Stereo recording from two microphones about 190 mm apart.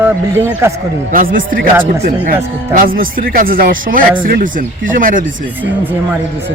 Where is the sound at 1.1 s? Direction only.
45° right (ahead or behind).